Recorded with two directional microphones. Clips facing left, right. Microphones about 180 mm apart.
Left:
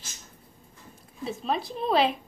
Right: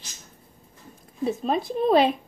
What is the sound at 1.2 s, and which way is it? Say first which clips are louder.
Speech: right 5 dB; 45° right (ahead or behind).